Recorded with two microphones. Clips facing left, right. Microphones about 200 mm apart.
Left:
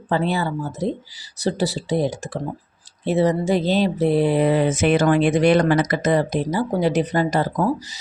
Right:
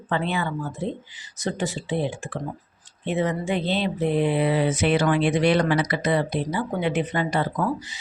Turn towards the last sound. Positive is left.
turn(degrees=40)  # may be behind; listen again after turning